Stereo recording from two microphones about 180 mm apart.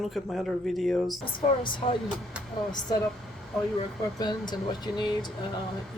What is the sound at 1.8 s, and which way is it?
Speech, 35° left (ahead or behind).